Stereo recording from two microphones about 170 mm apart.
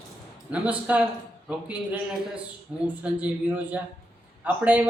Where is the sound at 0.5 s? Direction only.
10° right (ahead or behind).